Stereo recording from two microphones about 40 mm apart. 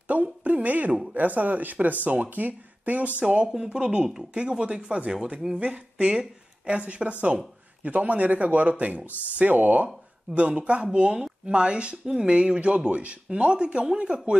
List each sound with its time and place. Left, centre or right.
0.1 s speech: right
3.7 s speech: centre; by 9.8 s right
10.6 s speech: right